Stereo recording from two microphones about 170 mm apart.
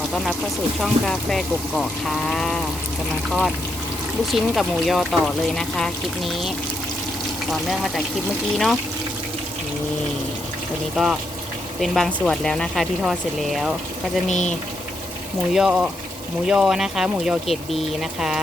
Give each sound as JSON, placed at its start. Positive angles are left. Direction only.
{"t": 0.1, "sound": "speech", "side_deg": 5}
{"t": 7.5, "sound": "speech", "side_deg": 0}
{"t": 10.9, "sound": "speech", "side_deg": -5}
{"t": 14.3, "sound": "speech", "side_deg": 45}
{"t": 15.5, "sound": "speech", "side_deg": -5}